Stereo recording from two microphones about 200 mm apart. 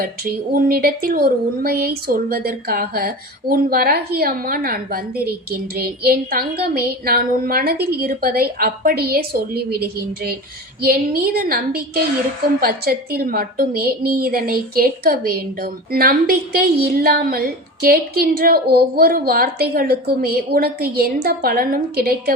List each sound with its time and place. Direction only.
0.0 s a woman's voice: 45° right (ahead or behind)